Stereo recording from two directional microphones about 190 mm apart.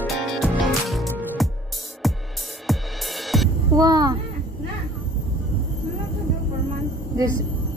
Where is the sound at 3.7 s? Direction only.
20° right (ahead or behind).